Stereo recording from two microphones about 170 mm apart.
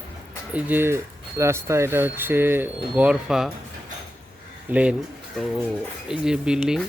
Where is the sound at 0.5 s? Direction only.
10° right (ahead or behind).